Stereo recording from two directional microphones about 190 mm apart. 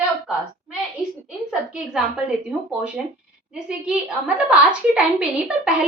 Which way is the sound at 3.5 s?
5° right (ahead or behind).